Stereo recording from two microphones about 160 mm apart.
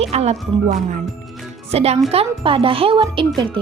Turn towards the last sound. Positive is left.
turn(degrees=-30)  # may be behind; listen again after turning